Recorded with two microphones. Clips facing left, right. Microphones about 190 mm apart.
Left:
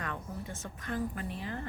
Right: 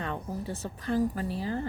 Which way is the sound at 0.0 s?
30° right (ahead or behind).